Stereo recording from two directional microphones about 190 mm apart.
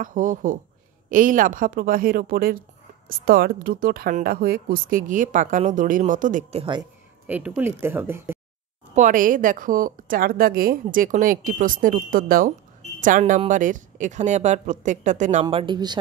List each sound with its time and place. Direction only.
0.0 s a woman's voice: 45° right (ahead or behind)
7.2 s speech: 10° right (ahead or behind)
8.9 s a woman's voice: 45° right (ahead or behind)
15.4 s speech: 25° right (ahead or behind)